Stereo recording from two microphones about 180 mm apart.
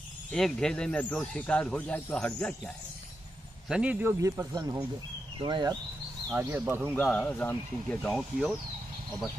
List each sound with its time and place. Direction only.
0.3 s a man's voice: 5° left (ahead or behind); by 5.8 s 25° right (ahead or behind)
6.3 s a man's voice: 10° right (ahead or behind)
7.1 s speech: 10° left (ahead or behind)